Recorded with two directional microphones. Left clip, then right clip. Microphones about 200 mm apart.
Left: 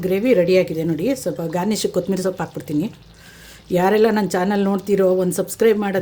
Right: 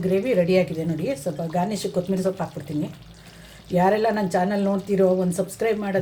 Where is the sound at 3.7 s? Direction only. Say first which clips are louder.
Left 4 dB; 60° left (ahead or behind).